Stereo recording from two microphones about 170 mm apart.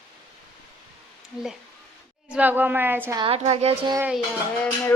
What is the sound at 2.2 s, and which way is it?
Speech, 10° right (ahead or behind).